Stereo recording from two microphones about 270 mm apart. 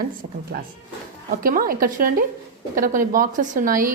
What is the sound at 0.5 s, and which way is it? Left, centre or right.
A woman's voice, right.